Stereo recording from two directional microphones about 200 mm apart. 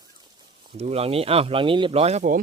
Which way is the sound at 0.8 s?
30° right (ahead or behind).